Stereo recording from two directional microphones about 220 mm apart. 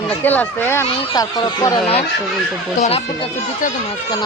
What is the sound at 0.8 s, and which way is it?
Speech, 25° left (ahead or behind).